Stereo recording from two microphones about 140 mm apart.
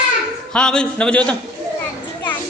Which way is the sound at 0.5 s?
5° left (ahead or behind).